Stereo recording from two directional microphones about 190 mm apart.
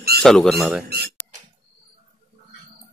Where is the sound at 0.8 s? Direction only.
55° right (ahead or behind).